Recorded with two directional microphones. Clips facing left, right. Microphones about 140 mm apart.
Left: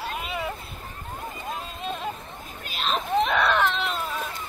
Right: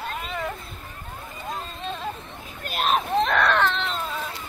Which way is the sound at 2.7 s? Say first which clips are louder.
Right 5 dB; 50° right (ahead or behind).